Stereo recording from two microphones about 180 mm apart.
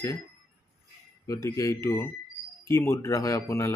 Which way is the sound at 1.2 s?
20° left (ahead or behind).